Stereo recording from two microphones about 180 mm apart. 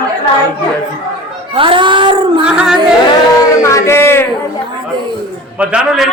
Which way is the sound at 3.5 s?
15° left (ahead or behind).